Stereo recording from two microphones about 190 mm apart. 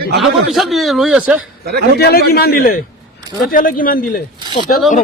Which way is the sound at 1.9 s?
55° left (ahead or behind).